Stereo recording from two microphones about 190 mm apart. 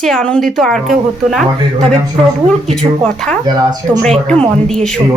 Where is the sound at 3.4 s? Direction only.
20° right (ahead or behind).